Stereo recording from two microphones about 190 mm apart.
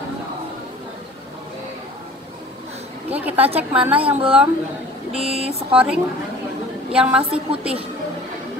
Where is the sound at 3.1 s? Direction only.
10° right (ahead or behind).